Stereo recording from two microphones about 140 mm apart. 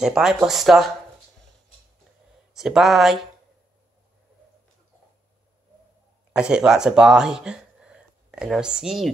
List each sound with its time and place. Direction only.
0.0 s speech: 5° right (ahead or behind)
2.5 s speech: 5° right (ahead or behind)
6.3 s speech: 5° right (ahead or behind)